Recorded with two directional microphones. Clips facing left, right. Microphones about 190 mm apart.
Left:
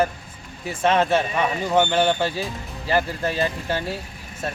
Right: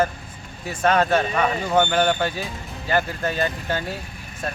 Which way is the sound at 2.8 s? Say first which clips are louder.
Even; 30° left (ahead or behind).